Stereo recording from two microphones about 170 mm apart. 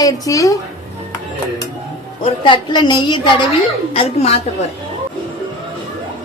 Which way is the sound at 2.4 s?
25° left (ahead or behind).